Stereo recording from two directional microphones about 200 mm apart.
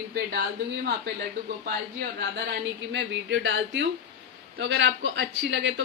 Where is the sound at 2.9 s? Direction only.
65° right (ahead or behind).